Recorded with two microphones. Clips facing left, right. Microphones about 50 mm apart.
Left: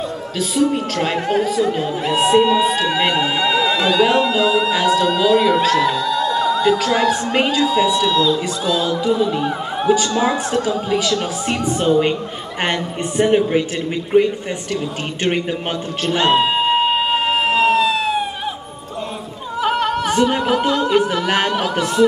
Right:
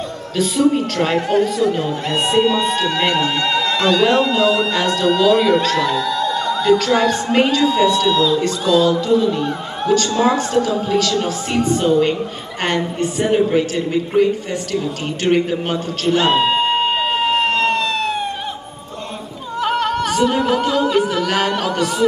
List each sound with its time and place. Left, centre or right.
0.4 s a woman's voice: centre; by 14.3 s left
15.3 s a sound: centre
19.6 s music: centre
21.5 s singing: centre